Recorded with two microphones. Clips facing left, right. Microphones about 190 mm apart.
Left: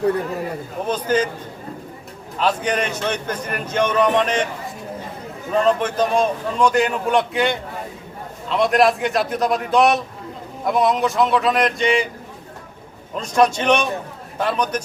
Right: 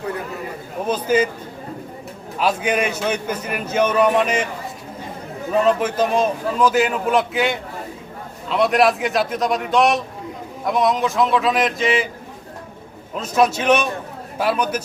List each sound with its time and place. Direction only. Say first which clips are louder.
0.9 s a man's voice: right 2 dB; 10° right (ahead or behind)
2.4 s a man's voice: right 1 dB; 10° right (ahead or behind)
5.5 s a man's voice: even; 5° right (ahead or behind)
13.1 s a man's voice: left 1 dB; 5° right (ahead or behind)